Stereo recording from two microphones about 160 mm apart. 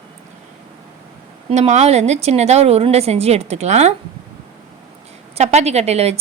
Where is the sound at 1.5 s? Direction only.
45° right (ahead or behind).